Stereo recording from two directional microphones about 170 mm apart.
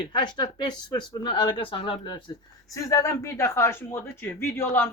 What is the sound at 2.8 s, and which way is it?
A woman's voice, 15° left (ahead or behind).